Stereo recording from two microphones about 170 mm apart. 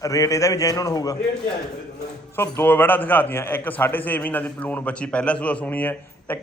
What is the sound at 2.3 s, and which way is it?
A man's voice, 15° left (ahead or behind).